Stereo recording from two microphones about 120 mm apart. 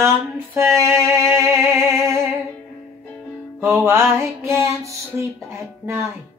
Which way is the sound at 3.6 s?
20° right (ahead or behind).